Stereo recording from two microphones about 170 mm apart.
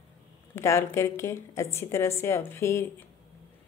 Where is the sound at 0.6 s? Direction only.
15° left (ahead or behind).